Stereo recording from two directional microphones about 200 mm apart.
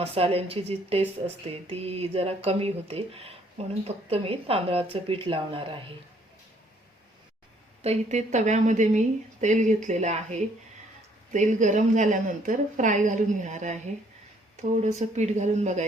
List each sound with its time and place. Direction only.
0.0 s speech: 30° right (ahead or behind)
7.8 s speech: 35° right (ahead or behind)